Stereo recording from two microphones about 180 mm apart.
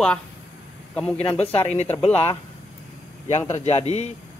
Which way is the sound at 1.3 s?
35° left (ahead or behind).